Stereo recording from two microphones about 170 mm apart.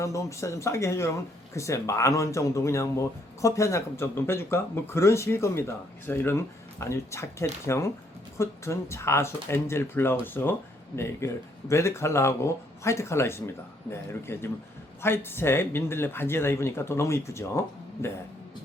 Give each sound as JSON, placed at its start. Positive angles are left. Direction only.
{"t": 0.0, "sound": "speech", "side_deg": 15}